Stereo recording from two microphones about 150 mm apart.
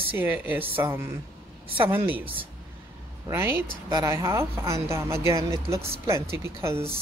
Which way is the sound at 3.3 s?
15° right (ahead or behind).